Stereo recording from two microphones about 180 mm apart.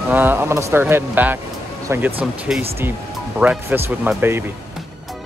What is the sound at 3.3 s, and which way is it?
Speech, 10° right (ahead or behind).